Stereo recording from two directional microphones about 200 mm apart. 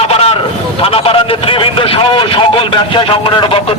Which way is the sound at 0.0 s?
30° left (ahead or behind).